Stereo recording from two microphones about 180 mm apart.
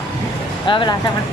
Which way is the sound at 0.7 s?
25° left (ahead or behind).